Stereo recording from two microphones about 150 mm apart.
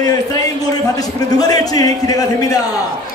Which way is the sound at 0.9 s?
25° left (ahead or behind).